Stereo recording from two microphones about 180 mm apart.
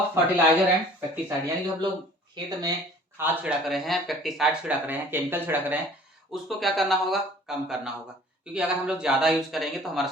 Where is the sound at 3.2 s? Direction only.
5° right (ahead or behind).